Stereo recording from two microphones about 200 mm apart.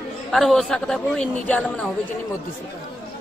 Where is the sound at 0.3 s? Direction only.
Centre (ahead or behind).